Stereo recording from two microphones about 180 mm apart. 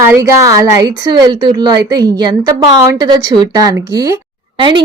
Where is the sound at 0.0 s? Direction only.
15° right (ahead or behind).